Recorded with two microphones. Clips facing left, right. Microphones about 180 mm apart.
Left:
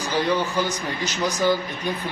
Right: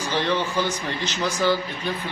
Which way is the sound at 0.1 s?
10° left (ahead or behind).